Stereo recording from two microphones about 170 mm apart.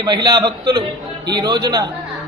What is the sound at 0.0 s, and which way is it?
A man's voice, 25° right (ahead or behind).